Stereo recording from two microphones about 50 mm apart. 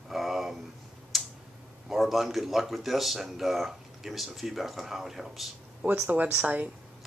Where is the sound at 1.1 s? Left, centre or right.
Centre.